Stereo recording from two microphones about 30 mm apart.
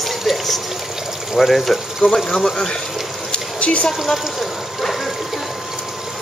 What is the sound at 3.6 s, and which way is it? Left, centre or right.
Speech, left.